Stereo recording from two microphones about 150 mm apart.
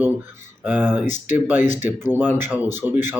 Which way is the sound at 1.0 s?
55° left (ahead or behind).